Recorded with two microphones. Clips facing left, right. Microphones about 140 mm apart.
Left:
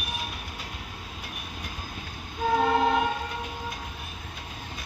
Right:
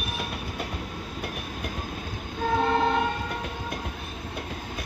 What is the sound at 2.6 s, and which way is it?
Music, 5° left (ahead or behind).